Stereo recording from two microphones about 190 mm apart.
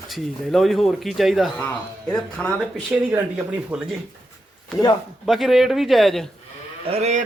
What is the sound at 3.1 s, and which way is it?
Speech, 5° right (ahead or behind).